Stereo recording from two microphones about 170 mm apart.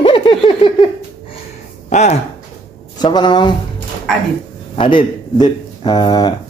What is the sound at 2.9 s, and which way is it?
Speech, 25° left (ahead or behind).